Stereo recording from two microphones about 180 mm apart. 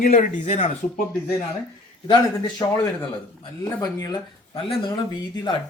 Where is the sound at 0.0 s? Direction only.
45° left (ahead or behind).